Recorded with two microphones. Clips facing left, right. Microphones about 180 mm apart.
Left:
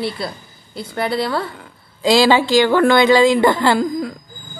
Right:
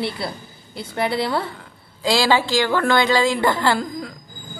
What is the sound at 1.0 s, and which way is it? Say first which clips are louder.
Speech: left 1 dB; 20° right (ahead or behind).